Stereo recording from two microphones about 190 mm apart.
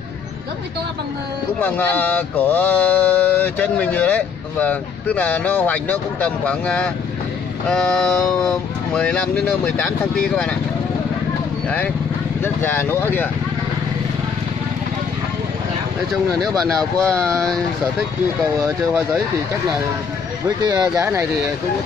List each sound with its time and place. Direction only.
1.6 s speech: 10° left (ahead or behind)
12.6 s speech: 10° left (ahead or behind)
16.1 s speech: centre (ahead or behind)
20.4 s speech: 20° right (ahead or behind)